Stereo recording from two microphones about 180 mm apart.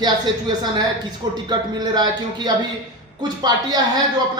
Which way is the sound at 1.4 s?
25° right (ahead or behind).